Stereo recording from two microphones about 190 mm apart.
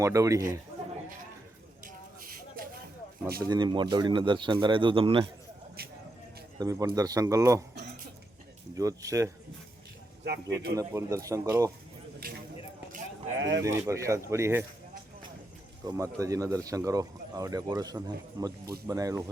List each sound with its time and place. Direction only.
0.0 s speech: 15° right (ahead or behind)
2.6 s a sound: 50° right (ahead or behind)
3.5 s speech: 25° right (ahead or behind)
6.6 s speech: 20° right (ahead or behind)
8.7 s speech: 15° right (ahead or behind)
10.2 s a man's voice: 60° right (ahead or behind)
10.8 s speech: 15° right (ahead or behind)
12.2 s a sound: 50° right (ahead or behind)
13.6 s speech: 15° right (ahead or behind)
15.9 s speech: 15° right (ahead or behind)